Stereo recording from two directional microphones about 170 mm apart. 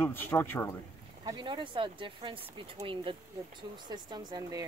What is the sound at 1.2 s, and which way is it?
Speech, 25° right (ahead or behind).